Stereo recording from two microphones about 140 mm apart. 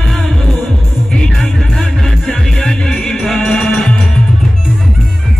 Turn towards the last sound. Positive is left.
turn(degrees=5)  # may be behind; listen again after turning